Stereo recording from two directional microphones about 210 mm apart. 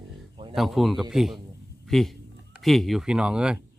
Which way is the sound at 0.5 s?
Centre (ahead or behind).